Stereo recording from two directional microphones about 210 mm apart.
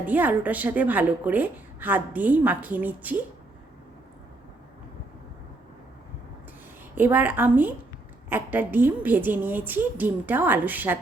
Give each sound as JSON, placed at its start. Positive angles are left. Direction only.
{"t": 0.0, "sound": "a woman's voice", "side_deg": -10}
{"t": 6.9, "sound": "a woman's voice", "side_deg": -10}